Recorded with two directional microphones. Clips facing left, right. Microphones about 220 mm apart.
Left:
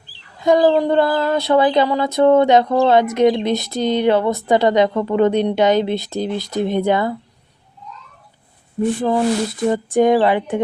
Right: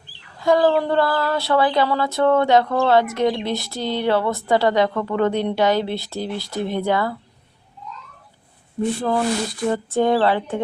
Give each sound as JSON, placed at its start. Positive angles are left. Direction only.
{"t": 0.3, "sound": "speech", "side_deg": 20}
{"t": 9.0, "sound": "speech", "side_deg": 15}